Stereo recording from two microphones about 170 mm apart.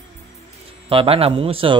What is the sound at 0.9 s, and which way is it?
Speech, 35° right (ahead or behind).